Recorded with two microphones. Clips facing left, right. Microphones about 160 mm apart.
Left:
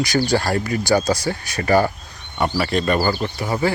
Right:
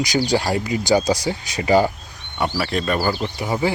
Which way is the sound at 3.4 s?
15° right (ahead or behind).